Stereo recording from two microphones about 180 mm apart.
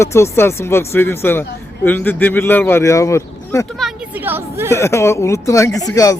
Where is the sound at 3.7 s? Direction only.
Centre (ahead or behind).